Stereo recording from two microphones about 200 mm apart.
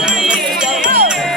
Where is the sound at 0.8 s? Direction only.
50° right (ahead or behind).